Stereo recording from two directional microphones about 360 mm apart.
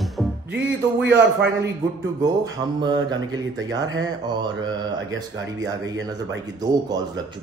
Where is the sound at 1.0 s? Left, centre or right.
Right.